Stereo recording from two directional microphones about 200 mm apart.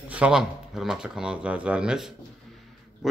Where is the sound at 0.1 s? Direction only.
5° right (ahead or behind).